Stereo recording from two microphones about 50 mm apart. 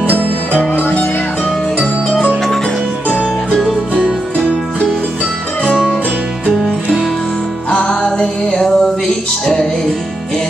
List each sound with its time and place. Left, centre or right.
0.0 s music: right
1.8 s music: centre
7.7 s music: centre